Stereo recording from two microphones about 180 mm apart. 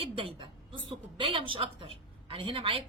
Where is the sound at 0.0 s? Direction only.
30° right (ahead or behind).